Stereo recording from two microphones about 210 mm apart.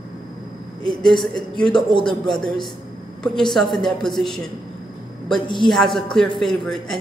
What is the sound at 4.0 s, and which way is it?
Speech, centre (ahead or behind).